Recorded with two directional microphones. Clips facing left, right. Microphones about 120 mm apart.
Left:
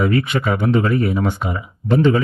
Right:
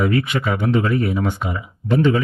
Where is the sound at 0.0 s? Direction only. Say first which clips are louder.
Left 1 dB; 35° left (ahead or behind).